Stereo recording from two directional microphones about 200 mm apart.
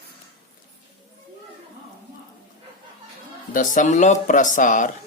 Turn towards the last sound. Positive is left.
turn(degrees=40)  # may be behind; listen again after turning